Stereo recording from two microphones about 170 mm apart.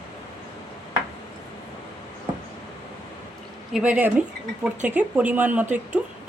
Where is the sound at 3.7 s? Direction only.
5° right (ahead or behind).